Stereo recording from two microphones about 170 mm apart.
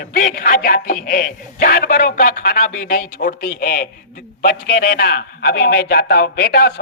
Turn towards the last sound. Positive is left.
turn(degrees=65)  # may be behind; listen again after turning